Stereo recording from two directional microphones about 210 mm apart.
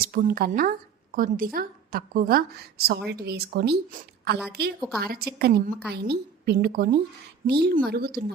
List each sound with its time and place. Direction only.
0.0 s a woman's voice: 45° right (ahead or behind)
4.8 s a woman's voice: centre (ahead or behind)
5.0 s a woman's voice: 45° right (ahead or behind)